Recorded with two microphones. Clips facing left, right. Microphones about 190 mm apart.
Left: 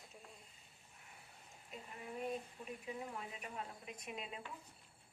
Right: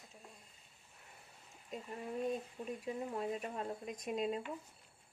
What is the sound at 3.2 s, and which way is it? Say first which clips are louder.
Speech: right 9 dB; 40° right (ahead or behind).